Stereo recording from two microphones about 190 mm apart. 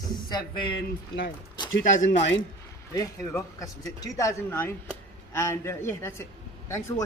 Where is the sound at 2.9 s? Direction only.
15° left (ahead or behind).